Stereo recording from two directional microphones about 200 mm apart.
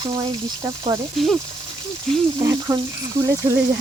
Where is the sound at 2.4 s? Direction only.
15° right (ahead or behind).